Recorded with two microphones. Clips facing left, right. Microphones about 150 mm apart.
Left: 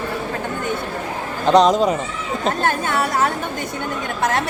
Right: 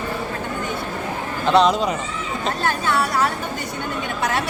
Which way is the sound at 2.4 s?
50° left (ahead or behind).